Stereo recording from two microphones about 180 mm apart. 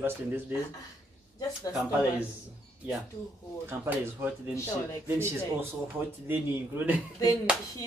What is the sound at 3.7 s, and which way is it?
Speech, 10° right (ahead or behind).